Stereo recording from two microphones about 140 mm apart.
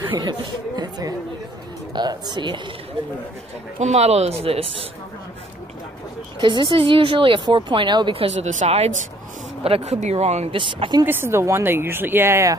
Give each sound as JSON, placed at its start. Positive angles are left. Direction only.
{"t": 0.1, "sound": "speech", "side_deg": -30}
{"t": 3.8, "sound": "speech", "side_deg": -50}
{"t": 6.4, "sound": "speech", "side_deg": -35}
{"t": 11.1, "sound": "speech", "side_deg": -15}